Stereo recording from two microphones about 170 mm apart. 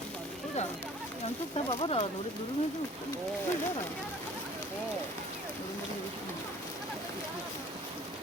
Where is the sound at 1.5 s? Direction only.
35° left (ahead or behind).